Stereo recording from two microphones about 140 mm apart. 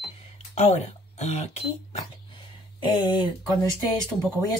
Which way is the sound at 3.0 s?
35° left (ahead or behind).